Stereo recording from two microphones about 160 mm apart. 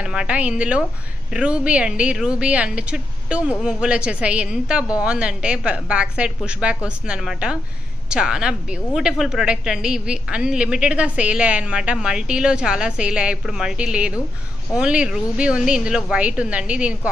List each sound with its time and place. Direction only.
0.0 s a woman's voice: 5° right (ahead or behind)